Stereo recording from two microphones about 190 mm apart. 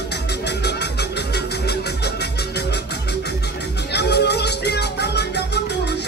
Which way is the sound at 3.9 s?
60° left (ahead or behind).